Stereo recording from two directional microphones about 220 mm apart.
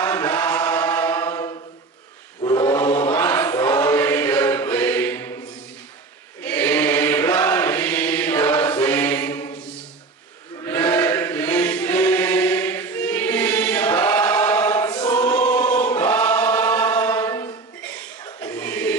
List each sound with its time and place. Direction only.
0.0 s chant: 10° left (ahead or behind)
6.4 s chant: 5° left (ahead or behind)
15.0 s choir: 5° left (ahead or behind)
18.4 s music: 5° left (ahead or behind)